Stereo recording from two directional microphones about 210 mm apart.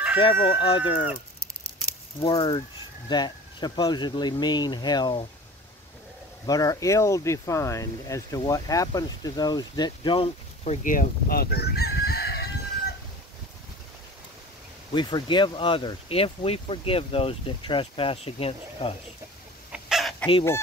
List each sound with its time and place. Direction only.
0.2 s speech: 25° left (ahead or behind)
2.1 s speech: 25° left (ahead or behind)
6.4 s speech: 15° left (ahead or behind); by 12.4 s 50° left (ahead or behind)
15.0 s speech: 20° left (ahead or behind)
19.7 s chicken: centre (ahead or behind)